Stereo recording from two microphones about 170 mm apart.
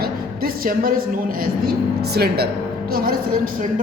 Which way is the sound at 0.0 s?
60° right (ahead or behind).